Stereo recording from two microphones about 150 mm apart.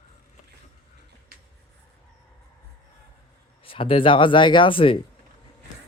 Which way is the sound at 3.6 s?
35° left (ahead or behind).